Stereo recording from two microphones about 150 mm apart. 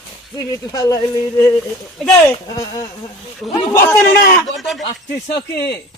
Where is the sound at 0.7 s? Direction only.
25° left (ahead or behind).